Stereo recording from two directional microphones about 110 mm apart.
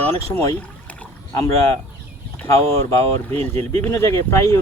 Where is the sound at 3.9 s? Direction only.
25° left (ahead or behind).